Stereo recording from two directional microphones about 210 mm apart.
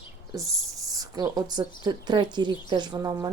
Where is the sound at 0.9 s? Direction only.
15° right (ahead or behind).